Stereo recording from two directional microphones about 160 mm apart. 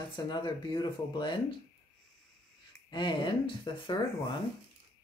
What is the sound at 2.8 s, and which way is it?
Speech, 30° left (ahead or behind).